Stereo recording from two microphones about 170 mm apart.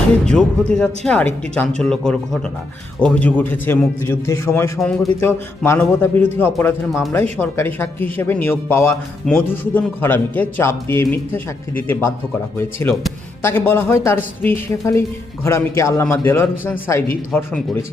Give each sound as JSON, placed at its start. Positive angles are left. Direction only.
{"t": 0.7, "sound": "a man's voice", "side_deg": 5}